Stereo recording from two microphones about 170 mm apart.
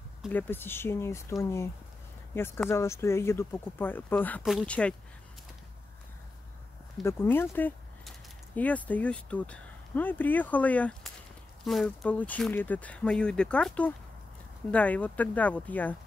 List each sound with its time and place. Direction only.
0.3 s speech: 10° left (ahead or behind)
7.0 s speech: 15° left (ahead or behind)